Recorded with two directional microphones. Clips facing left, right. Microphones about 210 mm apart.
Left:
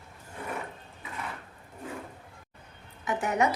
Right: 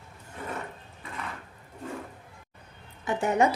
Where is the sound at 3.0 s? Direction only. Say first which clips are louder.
Right 3 dB; 30° right (ahead or behind).